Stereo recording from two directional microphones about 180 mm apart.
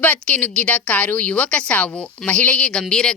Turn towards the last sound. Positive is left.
turn(degrees=5)  # may be behind; listen again after turning